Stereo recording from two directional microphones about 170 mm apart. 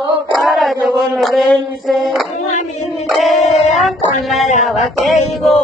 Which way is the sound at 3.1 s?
Centre (ahead or behind).